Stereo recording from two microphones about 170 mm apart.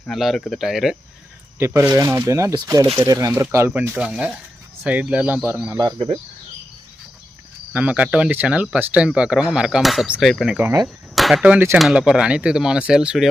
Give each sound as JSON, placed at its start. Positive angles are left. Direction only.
{"t": 0.1, "sound": "speech", "side_deg": 0}
{"t": 1.5, "sound": "speech", "side_deg": -15}
{"t": 5.8, "sound": "speech", "side_deg": -30}
{"t": 7.7, "sound": "speech", "side_deg": -10}
{"t": 11.1, "sound": "speech", "side_deg": 0}